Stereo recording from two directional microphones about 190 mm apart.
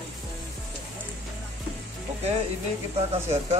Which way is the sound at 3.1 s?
35° right (ahead or behind).